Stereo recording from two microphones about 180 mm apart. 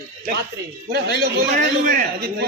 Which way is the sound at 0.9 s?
60° right (ahead or behind).